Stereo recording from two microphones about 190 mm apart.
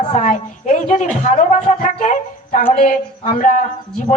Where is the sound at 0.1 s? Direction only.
45° left (ahead or behind).